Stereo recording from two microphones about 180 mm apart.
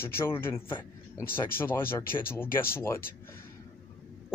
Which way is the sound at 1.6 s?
10° left (ahead or behind).